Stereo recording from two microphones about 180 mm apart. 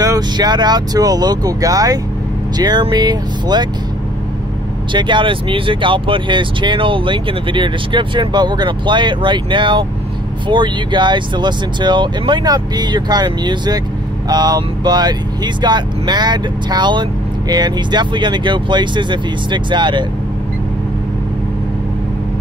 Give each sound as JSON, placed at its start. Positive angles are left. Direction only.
{"t": 0.0, "sound": "speech", "side_deg": -20}
{"t": 4.9, "sound": "speech", "side_deg": -25}